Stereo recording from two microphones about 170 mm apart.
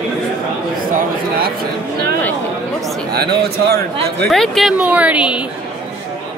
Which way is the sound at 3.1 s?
70° right (ahead or behind).